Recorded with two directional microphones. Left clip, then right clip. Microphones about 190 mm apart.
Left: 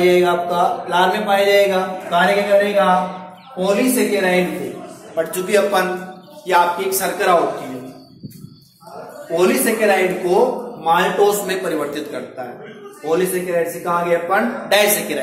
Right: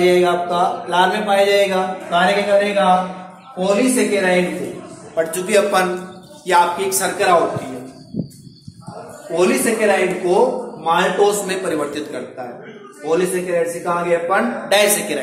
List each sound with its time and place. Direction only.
0.0 s a sound: 5° right (ahead or behind)
2.7 s speech: centre (ahead or behind)
4.1 s speech: 5° right (ahead or behind)
5.1 s a man's voice: 20° right (ahead or behind)
9.3 s speech: 10° right (ahead or behind)